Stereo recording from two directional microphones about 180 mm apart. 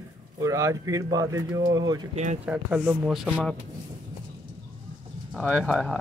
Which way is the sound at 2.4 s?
10° right (ahead or behind).